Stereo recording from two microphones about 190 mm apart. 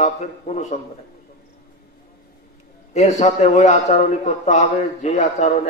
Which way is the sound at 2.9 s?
40° left (ahead or behind).